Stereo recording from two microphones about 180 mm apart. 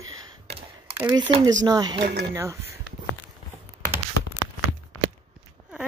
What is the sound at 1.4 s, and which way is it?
Speech, 20° right (ahead or behind).